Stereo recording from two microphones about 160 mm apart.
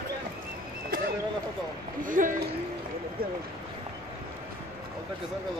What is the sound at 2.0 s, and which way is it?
Speech, 55° right (ahead or behind).